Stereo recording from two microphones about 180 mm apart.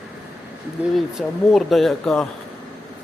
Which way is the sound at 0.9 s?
Centre (ahead or behind).